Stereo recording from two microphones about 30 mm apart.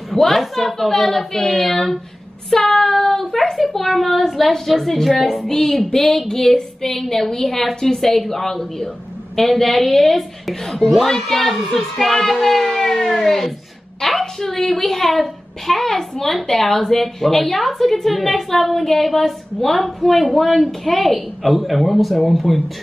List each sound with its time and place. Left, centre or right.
0.1 s a sound: centre
0.4 s speech: centre
2.5 s child singing: centre
3.5 s a woman's voice: centre
5.4 s a woman's voice: centre